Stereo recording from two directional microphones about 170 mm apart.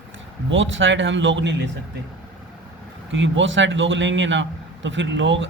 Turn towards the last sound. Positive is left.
turn(degrees=-90)